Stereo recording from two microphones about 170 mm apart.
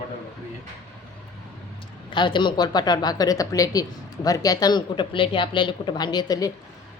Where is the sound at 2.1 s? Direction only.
30° left (ahead or behind).